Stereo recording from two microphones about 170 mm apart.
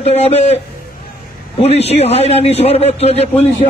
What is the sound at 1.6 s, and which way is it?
A man's voice, 35° left (ahead or behind).